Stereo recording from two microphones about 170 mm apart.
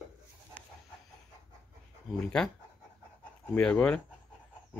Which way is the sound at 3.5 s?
5° left (ahead or behind).